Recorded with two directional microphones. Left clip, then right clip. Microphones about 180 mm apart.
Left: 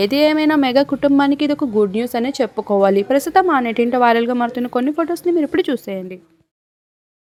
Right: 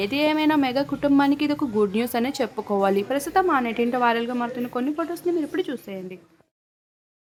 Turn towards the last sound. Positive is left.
turn(degrees=40)  # may be behind; listen again after turning